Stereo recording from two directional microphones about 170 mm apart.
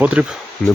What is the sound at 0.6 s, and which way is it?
Speech, 5° left (ahead or behind).